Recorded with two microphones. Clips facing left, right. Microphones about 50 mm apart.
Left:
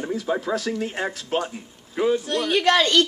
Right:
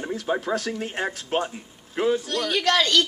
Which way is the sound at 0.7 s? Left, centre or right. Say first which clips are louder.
Left 3 dB; centre.